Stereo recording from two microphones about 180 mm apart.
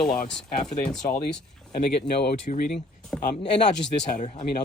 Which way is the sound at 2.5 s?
45° left (ahead or behind).